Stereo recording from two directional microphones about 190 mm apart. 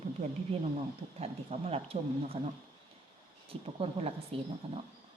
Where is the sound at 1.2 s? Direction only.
35° right (ahead or behind).